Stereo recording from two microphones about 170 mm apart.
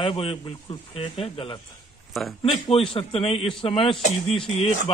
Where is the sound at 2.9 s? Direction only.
30° left (ahead or behind).